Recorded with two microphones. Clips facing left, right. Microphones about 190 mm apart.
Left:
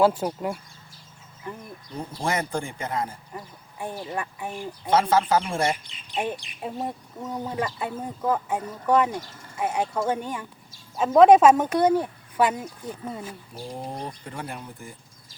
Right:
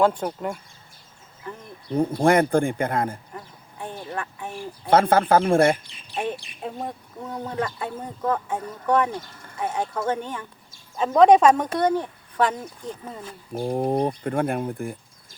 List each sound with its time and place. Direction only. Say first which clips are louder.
0.0 s speech: even; 5° left (ahead or behind)
1.9 s speech: right 10 dB; 55° right (ahead or behind)
3.3 s speech: left 1 dB; 10° left (ahead or behind)
4.9 s speech: right 3 dB; 55° right (ahead or behind)
5.9 s bird: even; 15° left (ahead or behind)
6.6 s speech: left 1 dB; 5° left (ahead or behind)
13.5 s speech: right 14 dB; 55° right (ahead or behind)